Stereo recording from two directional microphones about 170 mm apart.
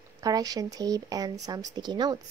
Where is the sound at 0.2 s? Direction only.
20° right (ahead or behind).